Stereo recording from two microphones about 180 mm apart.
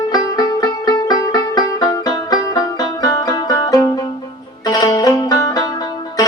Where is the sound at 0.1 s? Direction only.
20° left (ahead or behind).